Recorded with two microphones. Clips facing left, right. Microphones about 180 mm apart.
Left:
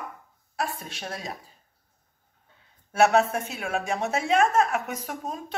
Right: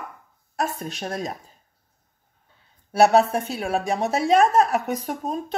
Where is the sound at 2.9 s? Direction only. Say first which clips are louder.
Right 4 dB; 35° right (ahead or behind).